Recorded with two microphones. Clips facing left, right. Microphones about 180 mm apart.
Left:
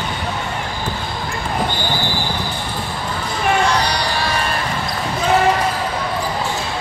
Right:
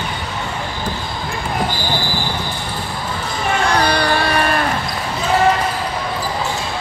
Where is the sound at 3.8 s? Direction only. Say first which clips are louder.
Right 4 dB; 55° right (ahead or behind).